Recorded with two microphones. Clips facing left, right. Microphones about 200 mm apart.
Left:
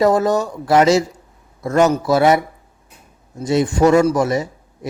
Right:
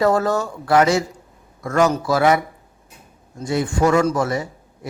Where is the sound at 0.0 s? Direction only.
20° left (ahead or behind).